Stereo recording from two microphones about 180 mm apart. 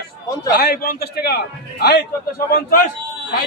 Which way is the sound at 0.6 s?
55° left (ahead or behind).